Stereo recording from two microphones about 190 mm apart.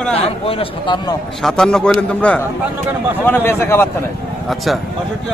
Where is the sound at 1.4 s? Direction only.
5° left (ahead or behind).